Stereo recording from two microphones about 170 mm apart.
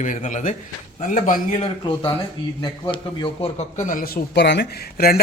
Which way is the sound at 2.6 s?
30° left (ahead or behind).